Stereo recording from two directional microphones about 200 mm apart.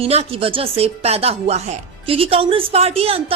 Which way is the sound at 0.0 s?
30° right (ahead or behind).